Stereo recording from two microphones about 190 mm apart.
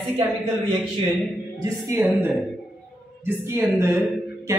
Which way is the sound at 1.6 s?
20° right (ahead or behind).